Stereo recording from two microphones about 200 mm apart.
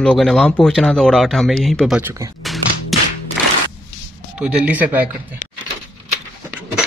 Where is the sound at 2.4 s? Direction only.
Centre (ahead or behind).